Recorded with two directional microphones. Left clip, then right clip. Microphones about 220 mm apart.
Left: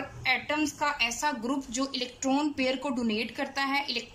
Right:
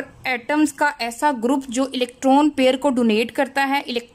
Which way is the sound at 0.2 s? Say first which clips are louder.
Right 7 dB; 35° right (ahead or behind).